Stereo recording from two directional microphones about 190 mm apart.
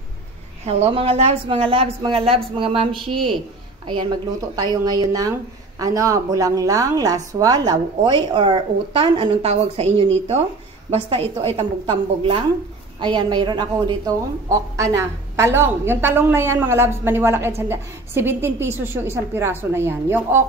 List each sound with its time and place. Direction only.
0.7 s a woman's voice: 30° right (ahead or behind); by 20.4 s 10° right (ahead or behind)